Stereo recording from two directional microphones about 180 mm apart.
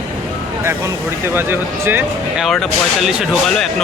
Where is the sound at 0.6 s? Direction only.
15° right (ahead or behind).